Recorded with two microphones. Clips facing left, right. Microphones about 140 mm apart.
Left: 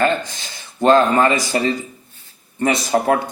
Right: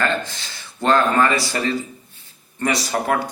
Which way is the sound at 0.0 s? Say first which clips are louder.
Left 4 dB; 20° left (ahead or behind).